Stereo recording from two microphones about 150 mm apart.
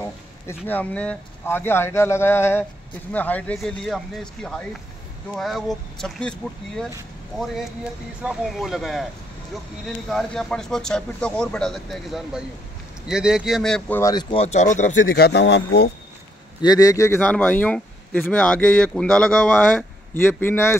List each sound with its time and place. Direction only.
0.0 s speech: 15° left (ahead or behind)
8.2 s speech: 5° right (ahead or behind)
14.3 s speech: 45° left (ahead or behind); by 15.9 s 90° left
16.6 s speech: 25° left (ahead or behind)